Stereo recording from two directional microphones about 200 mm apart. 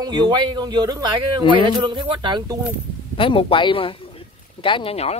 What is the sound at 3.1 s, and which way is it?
Speech, 25° left (ahead or behind).